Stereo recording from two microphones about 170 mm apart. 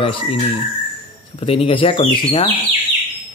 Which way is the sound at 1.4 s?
30° left (ahead or behind).